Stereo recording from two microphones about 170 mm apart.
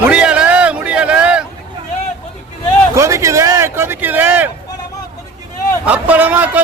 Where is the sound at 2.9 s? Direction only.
15° right (ahead or behind).